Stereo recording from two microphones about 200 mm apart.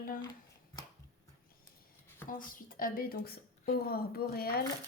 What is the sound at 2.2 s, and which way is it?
A woman's voice, 45° left (ahead or behind).